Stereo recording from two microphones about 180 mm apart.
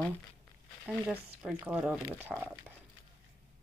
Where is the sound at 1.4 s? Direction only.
10° right (ahead or behind).